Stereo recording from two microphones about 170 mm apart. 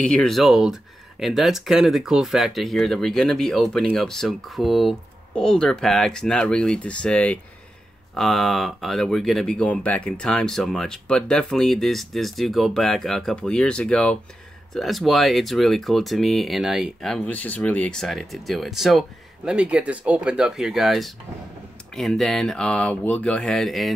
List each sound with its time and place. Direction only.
0.1 s speech: 5° left (ahead or behind)